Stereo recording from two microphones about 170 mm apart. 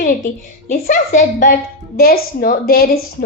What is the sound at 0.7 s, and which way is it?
A woman's voice, 50° left (ahead or behind).